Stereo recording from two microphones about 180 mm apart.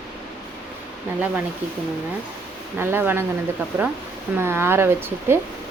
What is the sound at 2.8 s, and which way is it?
Speech, 10° right (ahead or behind).